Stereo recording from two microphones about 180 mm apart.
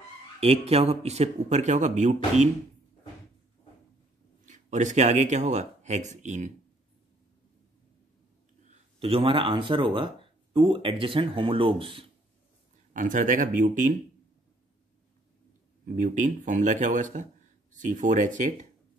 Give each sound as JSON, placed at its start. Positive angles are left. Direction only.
{"t": 0.4, "sound": "speech", "side_deg": -35}
{"t": 4.5, "sound": "speech", "side_deg": -40}
{"t": 9.0, "sound": "speech", "side_deg": -30}
{"t": 12.9, "sound": "speech", "side_deg": -45}
{"t": 15.8, "sound": "speech", "side_deg": -45}